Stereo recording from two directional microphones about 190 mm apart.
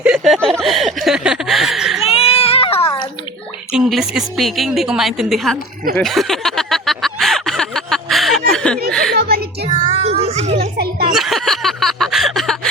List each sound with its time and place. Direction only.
0.0 s a woman's voice: 5° right (ahead or behind)
0.6 s a sound: centre (ahead or behind)
2.0 s music: 30° left (ahead or behind)
3.7 s a woman's voice: centre (ahead or behind)
6.0 s a sound: centre (ahead or behind)
8.9 s music: 5° left (ahead or behind)
9.1 s music: 55° right (ahead or behind)
9.8 s children playing: 35° right (ahead or behind)
11.1 s a sound: centre (ahead or behind)